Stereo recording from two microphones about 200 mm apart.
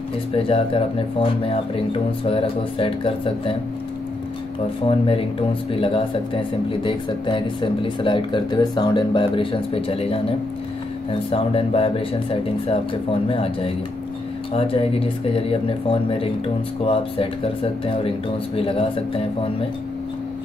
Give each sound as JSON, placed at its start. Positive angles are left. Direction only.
{"t": 0.3, "sound": "speech", "side_deg": 30}
{"t": 4.8, "sound": "speech", "side_deg": 25}